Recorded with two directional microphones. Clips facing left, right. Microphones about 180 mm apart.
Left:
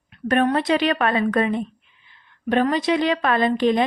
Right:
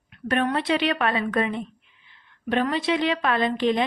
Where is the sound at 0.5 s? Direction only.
45° left (ahead or behind).